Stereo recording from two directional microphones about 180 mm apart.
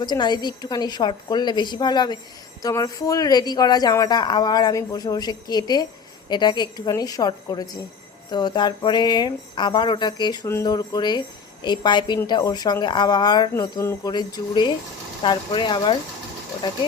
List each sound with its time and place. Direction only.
0.0 s speech: 25° left (ahead or behind)